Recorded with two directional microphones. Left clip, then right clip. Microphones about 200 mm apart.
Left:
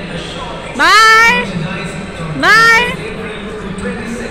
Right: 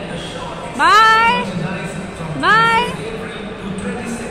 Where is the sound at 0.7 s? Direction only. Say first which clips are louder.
Left 4 dB; 5° left (ahead or behind).